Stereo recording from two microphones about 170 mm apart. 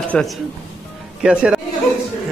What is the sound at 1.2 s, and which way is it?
Speech, 5° right (ahead or behind).